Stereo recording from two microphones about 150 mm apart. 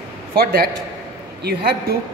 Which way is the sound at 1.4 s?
90° right.